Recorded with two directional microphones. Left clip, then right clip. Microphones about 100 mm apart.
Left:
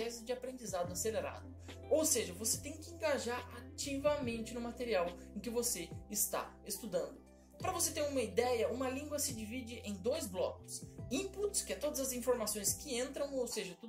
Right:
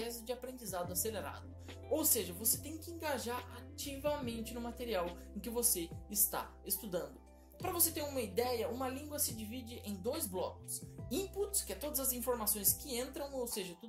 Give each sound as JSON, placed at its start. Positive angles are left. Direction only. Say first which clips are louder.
{"t": 0.6, "sound": "speech", "louder": "left 1 dB", "side_deg": -40}
{"t": 2.0, "sound": "a woman's voice", "louder": "left 3 dB", "side_deg": -55}
{"t": 3.7, "sound": "speech", "louder": "left 3 dB", "side_deg": -35}
{"t": 7.6, "sound": "a woman's voice", "louder": "left 2 dB", "side_deg": -60}